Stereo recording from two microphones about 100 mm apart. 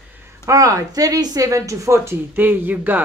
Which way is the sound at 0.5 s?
35° right (ahead or behind).